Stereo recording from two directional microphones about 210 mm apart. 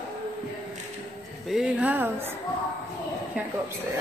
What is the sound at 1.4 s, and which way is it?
Speech, 5° right (ahead or behind).